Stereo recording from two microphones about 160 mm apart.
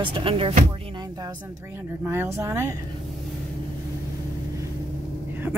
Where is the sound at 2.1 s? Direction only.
15° right (ahead or behind).